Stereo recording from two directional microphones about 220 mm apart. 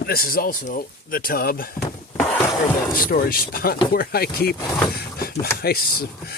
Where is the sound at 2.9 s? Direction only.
40° left (ahead or behind).